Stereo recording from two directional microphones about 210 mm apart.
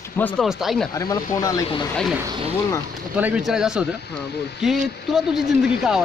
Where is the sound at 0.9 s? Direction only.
15° left (ahead or behind).